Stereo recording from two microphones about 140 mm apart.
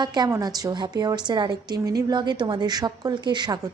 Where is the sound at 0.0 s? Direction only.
30° right (ahead or behind).